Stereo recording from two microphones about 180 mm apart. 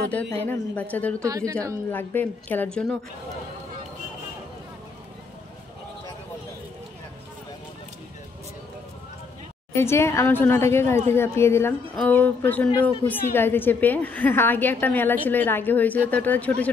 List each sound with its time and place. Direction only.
0.1 s a woman's voice: 10° left (ahead or behind)
1.2 s a woman's voice: 15° right (ahead or behind)
1.9 s a woman's voice: 10° left (ahead or behind)
9.8 s a woman's voice: 15° left (ahead or behind)